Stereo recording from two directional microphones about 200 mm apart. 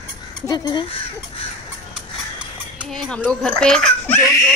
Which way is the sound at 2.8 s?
5° left (ahead or behind).